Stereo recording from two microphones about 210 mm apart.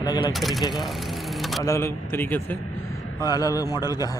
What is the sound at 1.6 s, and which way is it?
A man's voice, 15° left (ahead or behind).